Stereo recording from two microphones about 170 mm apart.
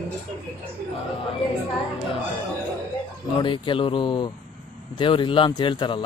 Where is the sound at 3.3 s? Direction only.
30° left (ahead or behind).